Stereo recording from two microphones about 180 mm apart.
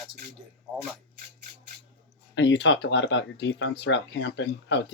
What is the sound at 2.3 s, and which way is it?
Speech, 80° left.